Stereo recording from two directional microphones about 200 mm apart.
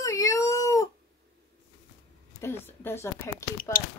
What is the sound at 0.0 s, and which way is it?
Dog, 15° left (ahead or behind).